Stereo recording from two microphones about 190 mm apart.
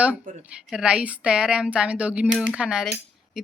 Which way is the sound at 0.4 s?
5° right (ahead or behind).